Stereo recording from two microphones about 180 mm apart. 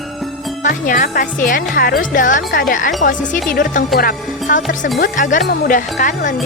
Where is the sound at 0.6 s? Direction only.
45° left (ahead or behind).